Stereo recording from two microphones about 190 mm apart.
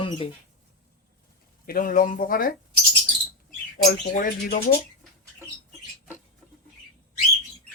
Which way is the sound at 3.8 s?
45° left (ahead or behind).